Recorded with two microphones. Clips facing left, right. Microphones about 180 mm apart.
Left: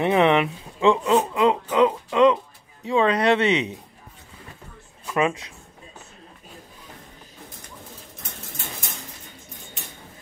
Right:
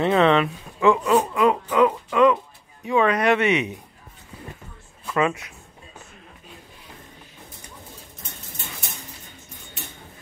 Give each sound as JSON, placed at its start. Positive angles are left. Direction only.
{"t": 0.0, "sound": "speech", "side_deg": 15}
{"t": 5.0, "sound": "speech", "side_deg": 20}